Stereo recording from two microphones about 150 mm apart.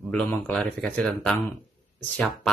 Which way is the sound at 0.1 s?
5° left (ahead or behind).